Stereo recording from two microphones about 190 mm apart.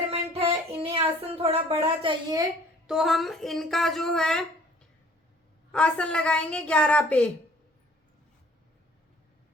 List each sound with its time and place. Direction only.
0.1 s child singing: 30° right (ahead or behind)
0.9 s speech: 30° right (ahead or behind)
2.8 s speech: centre (ahead or behind)
5.7 s speech: 5° left (ahead or behind)